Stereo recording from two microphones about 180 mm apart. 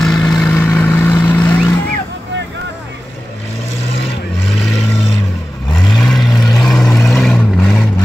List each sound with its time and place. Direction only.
0.2 s vehicle: centre (ahead or behind)
5.7 s vehicle: centre (ahead or behind)